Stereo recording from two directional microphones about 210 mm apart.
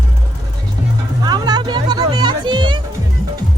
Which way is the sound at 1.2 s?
20° right (ahead or behind).